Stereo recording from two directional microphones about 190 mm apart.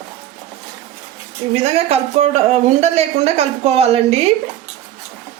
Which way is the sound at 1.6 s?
35° right (ahead or behind).